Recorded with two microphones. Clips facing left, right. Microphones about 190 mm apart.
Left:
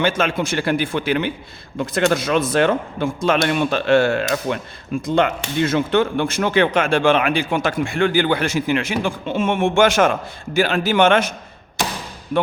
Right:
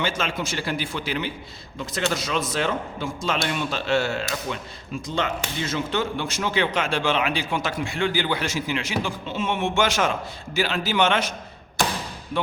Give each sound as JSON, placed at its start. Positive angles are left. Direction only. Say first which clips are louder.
{"t": 0.0, "sound": "speech", "louder": "left 7 dB", "side_deg": 55}